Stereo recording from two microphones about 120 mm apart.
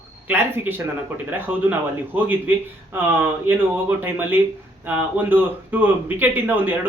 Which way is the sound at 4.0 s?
15° right (ahead or behind).